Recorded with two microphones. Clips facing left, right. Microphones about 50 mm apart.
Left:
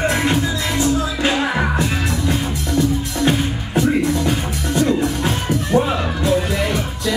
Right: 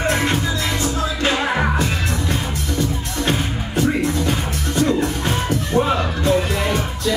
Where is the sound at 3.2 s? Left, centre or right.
Centre.